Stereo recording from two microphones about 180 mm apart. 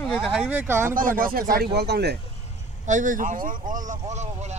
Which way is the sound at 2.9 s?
45° right (ahead or behind).